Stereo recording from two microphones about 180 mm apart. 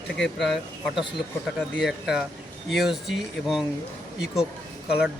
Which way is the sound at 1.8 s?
5° right (ahead or behind).